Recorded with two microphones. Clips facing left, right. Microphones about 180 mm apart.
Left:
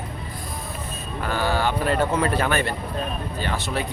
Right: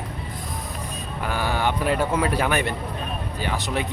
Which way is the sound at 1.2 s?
15° right (ahead or behind).